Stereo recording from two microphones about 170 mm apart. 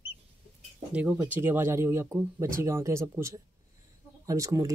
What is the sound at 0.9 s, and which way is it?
Speech, 10° right (ahead or behind).